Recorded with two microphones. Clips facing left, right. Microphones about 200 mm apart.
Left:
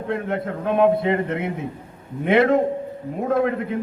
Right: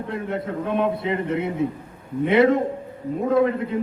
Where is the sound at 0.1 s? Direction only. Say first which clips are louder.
Left 4 dB; 55° left (ahead or behind).